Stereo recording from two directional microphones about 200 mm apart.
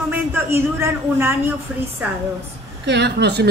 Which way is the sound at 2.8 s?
60° right (ahead or behind).